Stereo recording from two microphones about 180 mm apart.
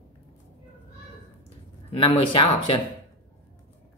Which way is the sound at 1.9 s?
25° left (ahead or behind).